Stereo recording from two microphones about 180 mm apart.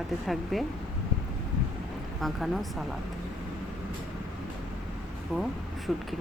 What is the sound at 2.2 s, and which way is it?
Speech, centre (ahead or behind).